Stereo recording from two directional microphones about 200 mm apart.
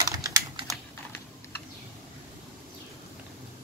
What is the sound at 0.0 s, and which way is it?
Typing, 20° right (ahead or behind).